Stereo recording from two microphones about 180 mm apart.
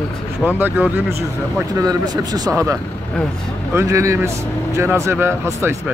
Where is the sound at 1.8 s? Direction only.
20° right (ahead or behind).